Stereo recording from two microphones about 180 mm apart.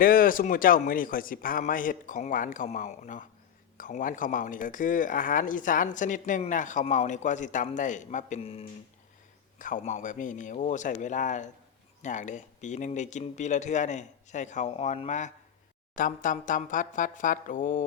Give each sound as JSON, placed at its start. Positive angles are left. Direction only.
{"t": 0.0, "sound": "speech", "side_deg": 55}
{"t": 9.6, "sound": "speech", "side_deg": 45}